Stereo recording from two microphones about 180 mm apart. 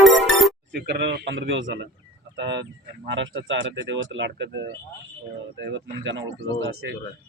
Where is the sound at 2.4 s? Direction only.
70° right (ahead or behind).